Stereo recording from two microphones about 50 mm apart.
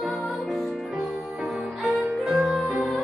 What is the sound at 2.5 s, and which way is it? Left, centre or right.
Music, right.